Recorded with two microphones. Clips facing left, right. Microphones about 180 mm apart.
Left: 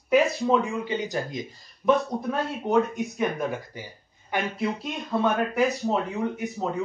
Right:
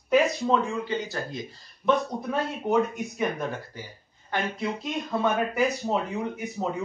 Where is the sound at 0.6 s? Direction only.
15° left (ahead or behind).